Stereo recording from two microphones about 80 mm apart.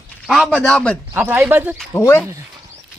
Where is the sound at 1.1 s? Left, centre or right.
Right.